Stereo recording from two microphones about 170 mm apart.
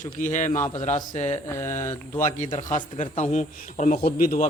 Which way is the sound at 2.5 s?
45° left (ahead or behind).